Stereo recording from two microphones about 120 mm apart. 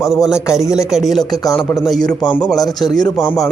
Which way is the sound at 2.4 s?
30° left (ahead or behind).